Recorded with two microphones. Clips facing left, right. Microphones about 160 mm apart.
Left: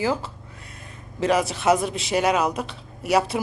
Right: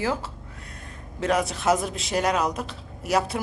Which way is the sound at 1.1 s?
Centre (ahead or behind).